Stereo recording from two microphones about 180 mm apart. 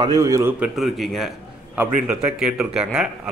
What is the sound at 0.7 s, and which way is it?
Speech, centre (ahead or behind).